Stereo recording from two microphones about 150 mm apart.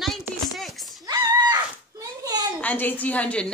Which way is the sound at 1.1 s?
25° right (ahead or behind).